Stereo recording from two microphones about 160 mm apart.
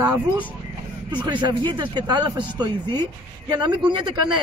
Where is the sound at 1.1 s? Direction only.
30° right (ahead or behind).